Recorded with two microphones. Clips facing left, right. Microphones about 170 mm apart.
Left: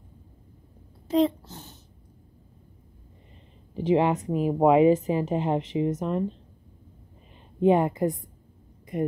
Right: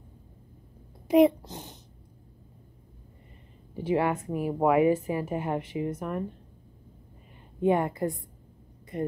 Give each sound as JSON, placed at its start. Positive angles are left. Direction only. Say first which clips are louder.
{"t": 1.0, "sound": "a sound", "louder": "right 3 dB", "side_deg": -15}
{"t": 3.7, "sound": "speech", "louder": "left 4 dB", "side_deg": 20}
{"t": 7.6, "sound": "a woman's voice", "louder": "left 4 dB", "side_deg": 20}